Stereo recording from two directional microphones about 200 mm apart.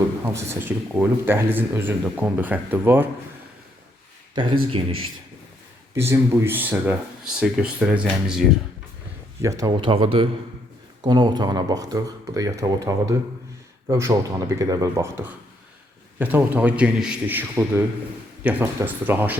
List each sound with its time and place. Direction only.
0.3 s speech: 10° right (ahead or behind)
4.7 s speech: 25° right (ahead or behind)
5.9 s speech: 10° right (ahead or behind)
9.4 s speech: 15° right (ahead or behind)